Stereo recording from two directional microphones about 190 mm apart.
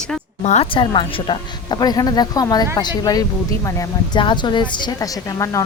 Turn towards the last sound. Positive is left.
turn(degrees=15)  # may be behind; listen again after turning